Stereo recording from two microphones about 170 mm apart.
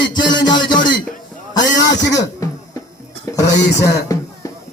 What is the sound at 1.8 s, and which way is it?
Speech, 90° left.